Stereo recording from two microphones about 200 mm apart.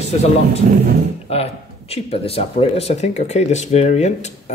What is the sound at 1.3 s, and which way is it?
Speech, 30° left (ahead or behind).